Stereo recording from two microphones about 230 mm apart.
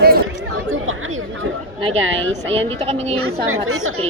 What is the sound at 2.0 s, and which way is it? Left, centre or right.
Speech, right.